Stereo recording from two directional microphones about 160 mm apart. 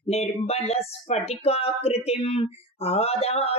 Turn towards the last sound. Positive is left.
turn(degrees=40)  # may be behind; listen again after turning